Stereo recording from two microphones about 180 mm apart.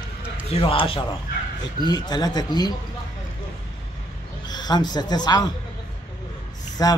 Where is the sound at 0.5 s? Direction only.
30° left (ahead or behind).